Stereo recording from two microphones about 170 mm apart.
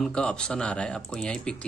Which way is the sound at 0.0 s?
5° left (ahead or behind).